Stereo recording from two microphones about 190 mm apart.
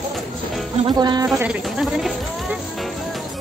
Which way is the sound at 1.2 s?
5° right (ahead or behind).